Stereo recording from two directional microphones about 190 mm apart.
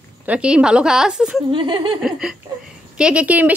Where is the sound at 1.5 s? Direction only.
25° right (ahead or behind).